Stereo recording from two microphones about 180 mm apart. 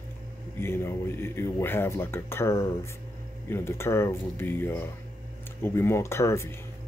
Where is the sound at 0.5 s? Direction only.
15° left (ahead or behind).